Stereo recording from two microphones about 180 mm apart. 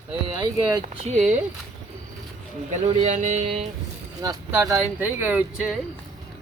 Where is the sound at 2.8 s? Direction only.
40° right (ahead or behind).